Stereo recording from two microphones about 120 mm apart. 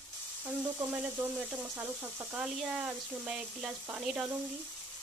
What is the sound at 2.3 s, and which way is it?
Speech, 5° right (ahead or behind).